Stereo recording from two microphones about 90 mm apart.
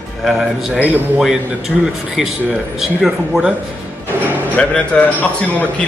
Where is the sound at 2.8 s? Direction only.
5° right (ahead or behind).